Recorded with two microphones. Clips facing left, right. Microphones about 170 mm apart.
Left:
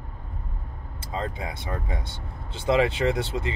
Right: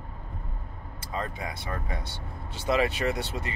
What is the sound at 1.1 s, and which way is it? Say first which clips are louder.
Speech: left 2 dB; 25° left (ahead or behind).